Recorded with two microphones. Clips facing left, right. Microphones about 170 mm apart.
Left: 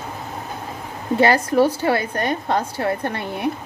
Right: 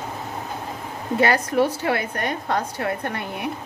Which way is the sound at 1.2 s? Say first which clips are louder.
Left 3 dB; 35° left (ahead or behind).